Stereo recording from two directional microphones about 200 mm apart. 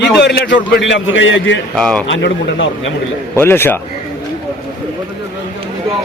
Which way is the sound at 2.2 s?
65° left (ahead or behind).